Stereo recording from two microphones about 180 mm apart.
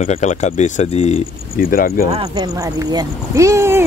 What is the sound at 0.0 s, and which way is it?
Speech, 45° left (ahead or behind).